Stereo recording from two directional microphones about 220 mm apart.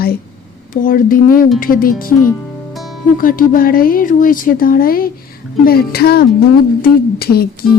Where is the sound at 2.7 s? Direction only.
Centre (ahead or behind).